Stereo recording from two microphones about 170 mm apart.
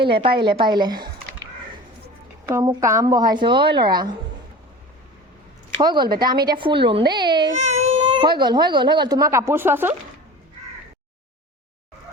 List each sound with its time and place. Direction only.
0.0 s a woman's voice: 30° right (ahead or behind)
2.5 s speech: 20° right (ahead or behind)
5.8 s speech: 25° right (ahead or behind)
7.6 s baby cry: 40° right (ahead or behind)
8.0 s speech: 25° right (ahead or behind)